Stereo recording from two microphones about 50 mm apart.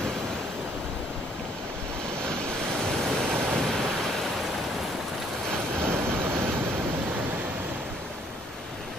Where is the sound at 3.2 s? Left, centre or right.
Centre.